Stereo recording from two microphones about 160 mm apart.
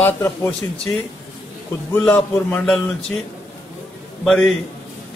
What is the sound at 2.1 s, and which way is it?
Speech, 15° left (ahead or behind).